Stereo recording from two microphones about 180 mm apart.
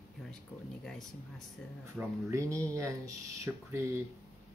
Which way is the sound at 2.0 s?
15° right (ahead or behind).